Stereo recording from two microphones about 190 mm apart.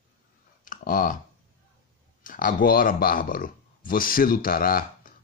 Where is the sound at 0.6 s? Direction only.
45° left (ahead or behind).